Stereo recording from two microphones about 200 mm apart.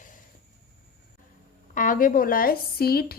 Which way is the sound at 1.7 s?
40° left (ahead or behind).